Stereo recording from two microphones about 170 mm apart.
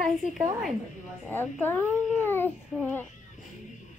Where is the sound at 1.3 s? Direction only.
10° left (ahead or behind).